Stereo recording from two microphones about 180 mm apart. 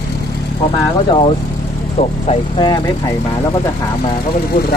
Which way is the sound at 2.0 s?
35° left (ahead or behind).